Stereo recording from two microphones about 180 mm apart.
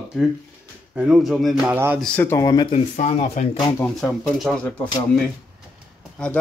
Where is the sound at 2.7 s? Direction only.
45° left (ahead or behind).